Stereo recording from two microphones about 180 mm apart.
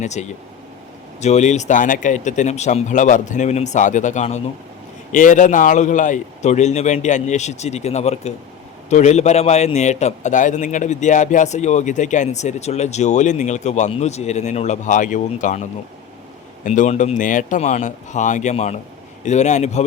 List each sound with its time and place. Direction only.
0.0 s a man's voice: 40° left (ahead or behind)
16.6 s a man's voice: 45° left (ahead or behind)